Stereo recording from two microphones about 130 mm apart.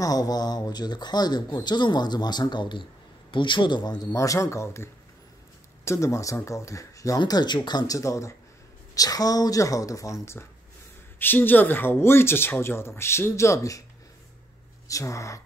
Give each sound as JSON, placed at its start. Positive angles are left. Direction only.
{"t": 0.0, "sound": "speech", "side_deg": 30}
{"t": 5.9, "sound": "speech", "side_deg": 20}
{"t": 14.9, "sound": "speech", "side_deg": 25}